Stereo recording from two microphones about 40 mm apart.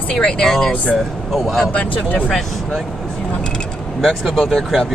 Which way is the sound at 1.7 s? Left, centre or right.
Left.